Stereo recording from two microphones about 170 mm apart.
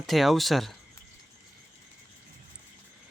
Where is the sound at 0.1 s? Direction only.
Centre (ahead or behind).